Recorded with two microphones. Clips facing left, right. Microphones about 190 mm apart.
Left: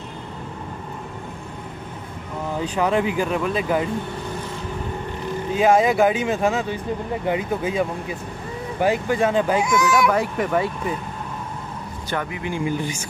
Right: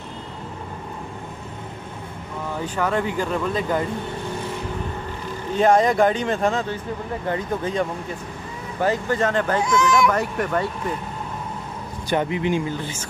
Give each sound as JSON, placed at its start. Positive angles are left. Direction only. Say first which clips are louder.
{"t": 2.6, "sound": "speech", "louder": "left 3 dB", "side_deg": 15}
{"t": 5.6, "sound": "speech", "louder": "even", "side_deg": 5}
{"t": 12.1, "sound": "speech", "louder": "right 6 dB", "side_deg": -25}
{"t": 12.6, "sound": "speech", "louder": "left 4 dB", "side_deg": 15}